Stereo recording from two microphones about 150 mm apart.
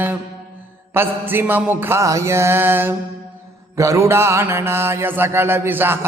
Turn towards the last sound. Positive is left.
turn(degrees=-15)  # may be behind; listen again after turning